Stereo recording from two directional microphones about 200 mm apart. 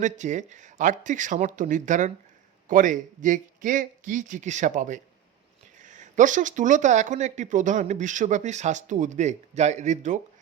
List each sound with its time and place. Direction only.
0.0 s speech: 35° right (ahead or behind)